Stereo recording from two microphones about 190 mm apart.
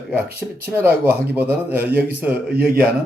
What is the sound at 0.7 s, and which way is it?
A man's voice, 10° right (ahead or behind).